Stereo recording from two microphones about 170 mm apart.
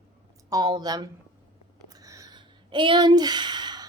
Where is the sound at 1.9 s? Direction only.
20° right (ahead or behind).